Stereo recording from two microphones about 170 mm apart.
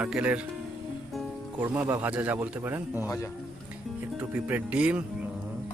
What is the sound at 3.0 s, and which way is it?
Speech, 15° left (ahead or behind).